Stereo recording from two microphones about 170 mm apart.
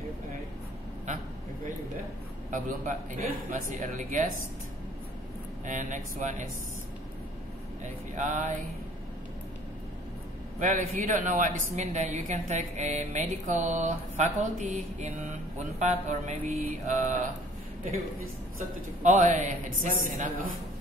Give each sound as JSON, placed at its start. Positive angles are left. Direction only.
{"t": 2.5, "sound": "a woman's voice", "side_deg": -50}
{"t": 5.7, "sound": "a woman's voice", "side_deg": -50}
{"t": 7.8, "sound": "a woman's voice", "side_deg": -45}
{"t": 10.6, "sound": "a woman's voice", "side_deg": -50}
{"t": 19.0, "sound": "a woman's voice", "side_deg": -50}